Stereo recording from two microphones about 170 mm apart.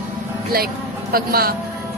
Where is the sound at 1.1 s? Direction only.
60° right (ahead or behind).